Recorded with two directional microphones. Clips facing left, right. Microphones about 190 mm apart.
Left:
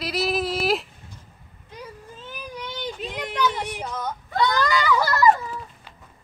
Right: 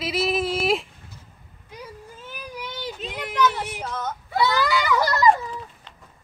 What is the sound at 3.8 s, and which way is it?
Whimper, 15° left (ahead or behind).